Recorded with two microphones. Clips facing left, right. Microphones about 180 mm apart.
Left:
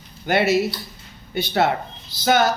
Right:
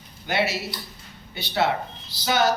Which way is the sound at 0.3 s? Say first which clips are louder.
Left 7 dB; 50° left (ahead or behind).